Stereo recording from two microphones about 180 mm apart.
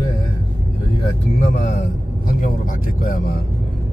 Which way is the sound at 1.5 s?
40° left (ahead or behind).